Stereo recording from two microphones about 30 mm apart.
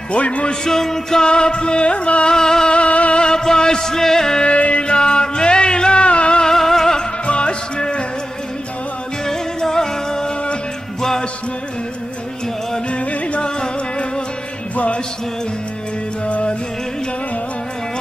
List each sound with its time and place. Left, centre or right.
0.1 s music: left
0.5 s music: centre
1.2 s music: left
2.2 s music: left
2.7 s music: left
3.2 s music: left
4.4 s music: left
4.8 s music: left
6.4 s music: centre
7.2 s music: left
9.2 s music: centre
13.4 s music: left